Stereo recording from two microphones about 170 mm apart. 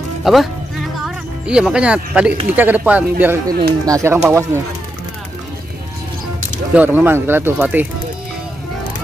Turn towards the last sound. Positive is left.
turn(degrees=-10)  # may be behind; listen again after turning